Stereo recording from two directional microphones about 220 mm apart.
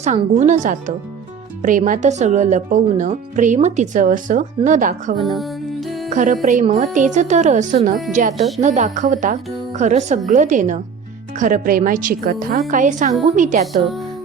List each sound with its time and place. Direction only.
0.0 s speech: 30° right (ahead or behind)
5.1 s music: centre (ahead or behind)
6.1 s speech: 35° right (ahead or behind)